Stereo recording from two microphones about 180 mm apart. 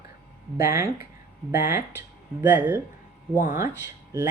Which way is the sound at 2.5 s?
10° right (ahead or behind).